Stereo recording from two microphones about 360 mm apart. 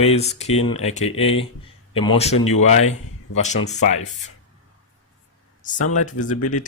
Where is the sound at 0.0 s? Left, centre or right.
Centre.